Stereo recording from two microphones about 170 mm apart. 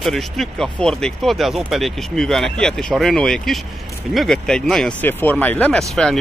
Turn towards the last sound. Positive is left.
turn(degrees=0)  # may be behind; listen again after turning